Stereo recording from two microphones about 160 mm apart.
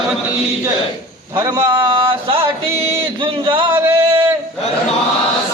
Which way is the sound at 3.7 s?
15° right (ahead or behind).